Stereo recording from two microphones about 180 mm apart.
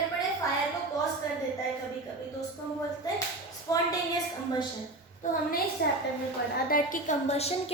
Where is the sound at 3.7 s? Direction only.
20° left (ahead or behind).